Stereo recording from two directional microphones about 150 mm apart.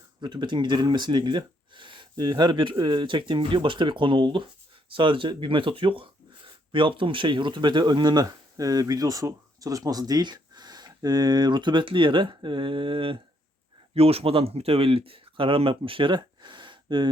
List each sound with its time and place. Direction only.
0.2 s speech: 30° right (ahead or behind)